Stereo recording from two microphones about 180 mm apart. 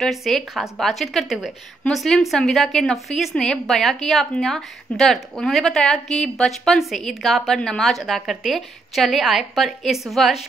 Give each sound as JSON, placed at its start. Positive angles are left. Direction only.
{"t": 0.0, "sound": "a woman's voice", "side_deg": 0}